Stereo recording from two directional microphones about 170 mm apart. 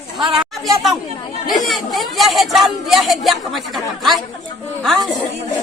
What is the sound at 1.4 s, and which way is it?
Speech, centre (ahead or behind).